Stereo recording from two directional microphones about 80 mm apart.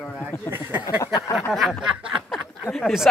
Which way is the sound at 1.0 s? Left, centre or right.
Left.